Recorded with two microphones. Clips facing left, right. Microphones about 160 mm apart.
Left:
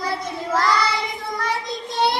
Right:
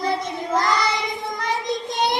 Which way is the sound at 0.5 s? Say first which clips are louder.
Left 1 dB; 20° right (ahead or behind).